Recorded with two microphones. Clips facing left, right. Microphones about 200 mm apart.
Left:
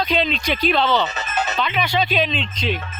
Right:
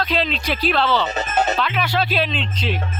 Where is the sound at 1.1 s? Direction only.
50° right (ahead or behind).